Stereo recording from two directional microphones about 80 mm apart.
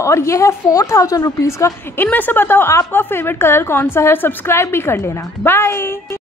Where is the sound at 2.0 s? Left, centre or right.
Left.